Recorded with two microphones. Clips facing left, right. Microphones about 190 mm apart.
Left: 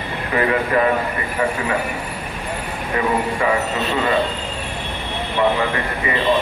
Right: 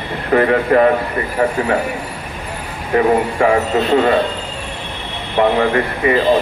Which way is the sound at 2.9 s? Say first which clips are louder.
Right 7 dB; 50° right (ahead or behind).